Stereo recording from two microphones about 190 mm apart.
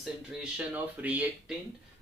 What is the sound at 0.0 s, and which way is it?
Speech, 5° right (ahead or behind).